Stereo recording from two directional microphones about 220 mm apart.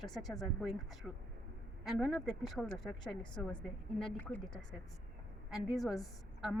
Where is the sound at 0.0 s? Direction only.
Centre (ahead or behind).